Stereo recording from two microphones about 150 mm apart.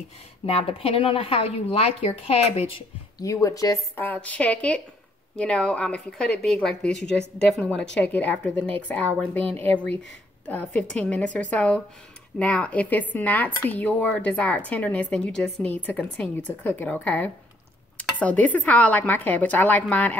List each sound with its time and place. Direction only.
0.5 s speech: 40° left (ahead or behind)
3.2 s speech: 20° left (ahead or behind)